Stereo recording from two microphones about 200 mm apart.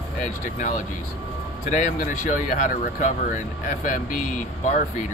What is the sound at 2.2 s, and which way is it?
Speech, 40° left (ahead or behind).